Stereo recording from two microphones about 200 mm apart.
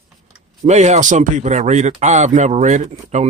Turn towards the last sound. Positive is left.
turn(degrees=-35)  # may be behind; listen again after turning